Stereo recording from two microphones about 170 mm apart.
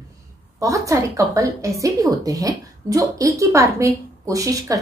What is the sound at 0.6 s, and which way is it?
A woman's voice, 20° right (ahead or behind).